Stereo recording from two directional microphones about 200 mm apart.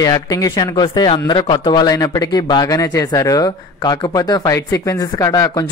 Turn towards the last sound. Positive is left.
turn(degrees=15)  # may be behind; listen again after turning